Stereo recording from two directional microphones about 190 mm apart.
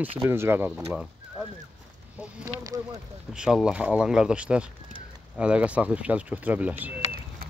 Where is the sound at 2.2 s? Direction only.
15° right (ahead or behind).